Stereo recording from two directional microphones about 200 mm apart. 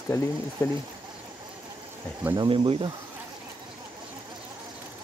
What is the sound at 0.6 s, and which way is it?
Speech, 15° left (ahead or behind).